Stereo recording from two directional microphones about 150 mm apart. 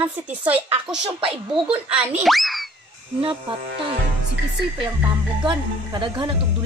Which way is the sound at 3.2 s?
35° right (ahead or behind).